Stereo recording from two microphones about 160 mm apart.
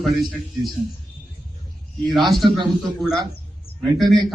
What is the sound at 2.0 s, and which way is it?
Speech, centre (ahead or behind).